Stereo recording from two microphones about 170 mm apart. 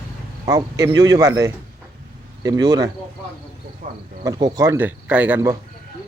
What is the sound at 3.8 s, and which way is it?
Speech, 50° right (ahead or behind).